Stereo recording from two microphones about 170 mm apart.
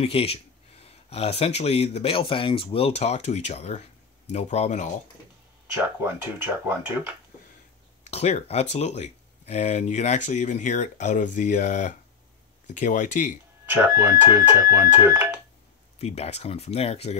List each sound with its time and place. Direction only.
0.0 s speech: 35° left (ahead or behind)
5.7 s speech: 15° right (ahead or behind)
8.0 s speech: 40° left (ahead or behind)
13.7 s speech: 15° right (ahead or behind)
16.0 s speech: 40° left (ahead or behind)